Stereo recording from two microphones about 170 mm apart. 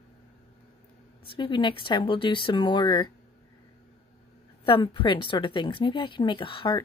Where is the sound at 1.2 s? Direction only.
30° left (ahead or behind).